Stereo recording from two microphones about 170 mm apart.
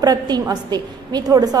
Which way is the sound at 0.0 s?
25° right (ahead or behind).